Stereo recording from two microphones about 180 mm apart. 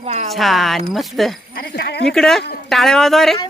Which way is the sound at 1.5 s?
60° left (ahead or behind).